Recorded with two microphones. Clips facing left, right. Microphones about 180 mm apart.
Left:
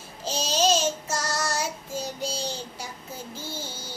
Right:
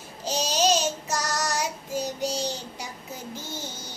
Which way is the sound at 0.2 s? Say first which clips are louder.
Even; 15° right (ahead or behind).